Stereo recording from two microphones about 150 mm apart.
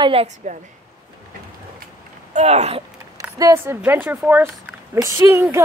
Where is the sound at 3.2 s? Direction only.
25° right (ahead or behind).